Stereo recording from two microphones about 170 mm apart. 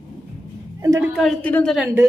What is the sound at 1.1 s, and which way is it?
Speech, centre (ahead or behind).